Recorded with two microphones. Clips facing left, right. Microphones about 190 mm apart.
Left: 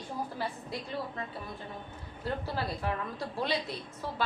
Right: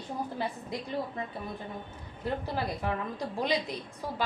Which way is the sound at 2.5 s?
15° right (ahead or behind).